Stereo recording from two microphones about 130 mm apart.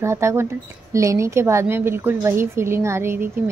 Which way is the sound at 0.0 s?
20° right (ahead or behind).